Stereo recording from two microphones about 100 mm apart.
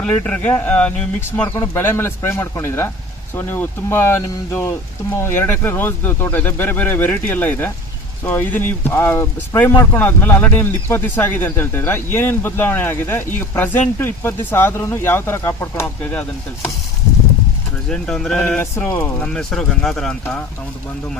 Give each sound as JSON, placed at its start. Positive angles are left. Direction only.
{"t": 0.0, "sound": "speech", "side_deg": 15}
{"t": 17.8, "sound": "speech", "side_deg": 5}